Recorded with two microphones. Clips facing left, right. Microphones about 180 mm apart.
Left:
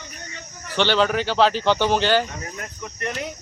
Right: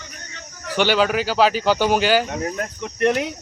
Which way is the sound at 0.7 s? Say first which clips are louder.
Right 1 dB; 10° right (ahead or behind).